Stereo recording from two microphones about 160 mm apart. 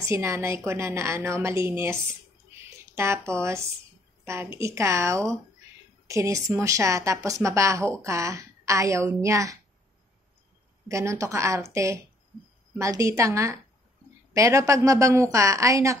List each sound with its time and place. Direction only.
0.0 s a woman's voice: 20° right (ahead or behind)
10.9 s a woman's voice: 20° right (ahead or behind)